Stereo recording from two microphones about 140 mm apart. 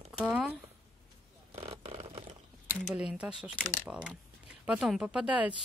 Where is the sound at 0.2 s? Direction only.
10° right (ahead or behind).